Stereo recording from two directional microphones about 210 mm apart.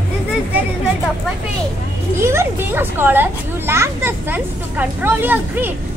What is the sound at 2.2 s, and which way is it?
Children playing, 10° right (ahead or behind).